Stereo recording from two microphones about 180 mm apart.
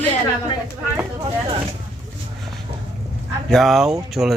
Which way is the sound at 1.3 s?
30° right (ahead or behind).